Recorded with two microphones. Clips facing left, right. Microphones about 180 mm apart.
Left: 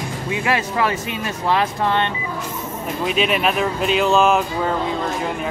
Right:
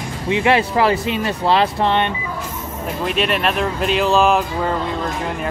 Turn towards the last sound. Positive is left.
turn(degrees=0)  # may be behind; listen again after turning